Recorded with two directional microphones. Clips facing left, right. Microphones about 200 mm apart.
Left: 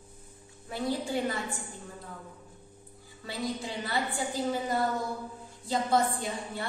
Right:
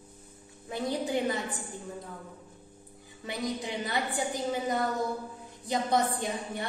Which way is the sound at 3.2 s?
20° right (ahead or behind).